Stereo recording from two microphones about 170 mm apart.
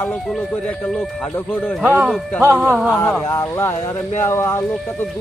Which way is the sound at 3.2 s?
15° left (ahead or behind).